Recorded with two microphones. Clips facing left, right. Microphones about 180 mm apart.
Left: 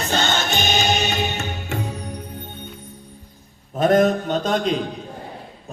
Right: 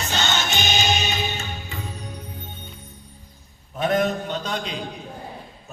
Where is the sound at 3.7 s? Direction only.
45° left (ahead or behind).